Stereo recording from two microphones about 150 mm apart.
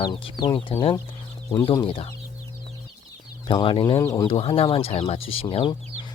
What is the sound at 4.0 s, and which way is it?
Speech, 20° left (ahead or behind).